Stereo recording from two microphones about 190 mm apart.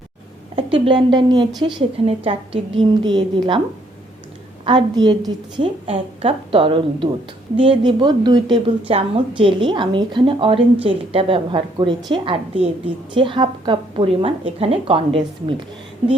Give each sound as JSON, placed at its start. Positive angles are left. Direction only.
{"t": 0.5, "sound": "a woman's voice", "side_deg": -25}
{"t": 4.6, "sound": "a woman's voice", "side_deg": -25}